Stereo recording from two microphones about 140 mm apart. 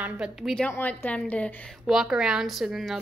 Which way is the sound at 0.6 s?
15° left (ahead or behind).